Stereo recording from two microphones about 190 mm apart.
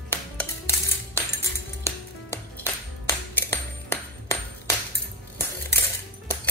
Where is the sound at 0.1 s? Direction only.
10° left (ahead or behind).